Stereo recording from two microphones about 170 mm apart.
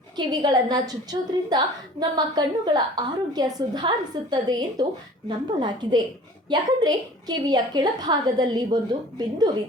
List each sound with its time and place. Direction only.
0.2 s a woman's voice: 25° right (ahead or behind)